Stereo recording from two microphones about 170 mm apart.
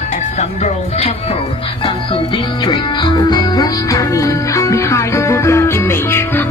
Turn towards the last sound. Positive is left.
turn(degrees=15)  # may be behind; listen again after turning